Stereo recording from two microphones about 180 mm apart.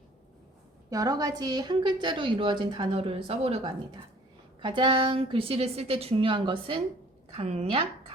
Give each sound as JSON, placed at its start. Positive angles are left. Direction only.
{"t": 0.9, "sound": "a woman's voice", "side_deg": -20}